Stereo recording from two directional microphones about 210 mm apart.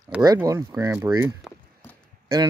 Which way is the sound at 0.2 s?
15° right (ahead or behind).